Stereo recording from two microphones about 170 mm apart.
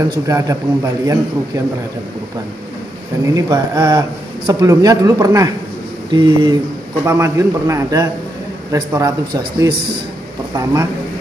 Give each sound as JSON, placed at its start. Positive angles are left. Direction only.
{"t": 0.3, "sound": "a man's voice", "side_deg": -20}
{"t": 3.3, "sound": "a man's voice", "side_deg": -20}